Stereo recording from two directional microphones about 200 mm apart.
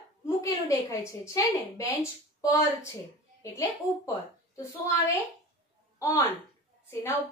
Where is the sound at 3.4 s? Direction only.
15° left (ahead or behind).